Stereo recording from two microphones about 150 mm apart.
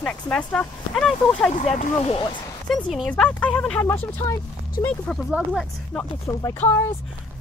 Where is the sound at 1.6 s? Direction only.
40° left (ahead or behind).